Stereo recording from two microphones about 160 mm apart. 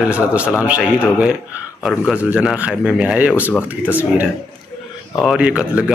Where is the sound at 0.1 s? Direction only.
5° right (ahead or behind).